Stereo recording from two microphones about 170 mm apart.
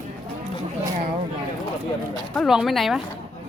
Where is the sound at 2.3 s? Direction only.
Centre (ahead or behind).